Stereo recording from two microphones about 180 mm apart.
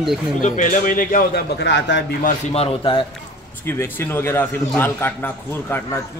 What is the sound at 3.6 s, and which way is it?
A man's voice, 10° left (ahead or behind).